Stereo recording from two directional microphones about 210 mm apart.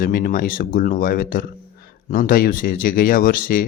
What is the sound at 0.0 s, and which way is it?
Speech, 45° left (ahead or behind).